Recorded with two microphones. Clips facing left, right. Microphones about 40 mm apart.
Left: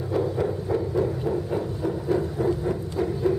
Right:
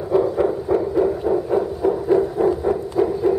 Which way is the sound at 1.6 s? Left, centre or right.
Right.